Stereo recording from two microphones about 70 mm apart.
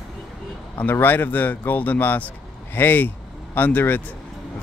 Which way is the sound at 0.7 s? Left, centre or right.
Left.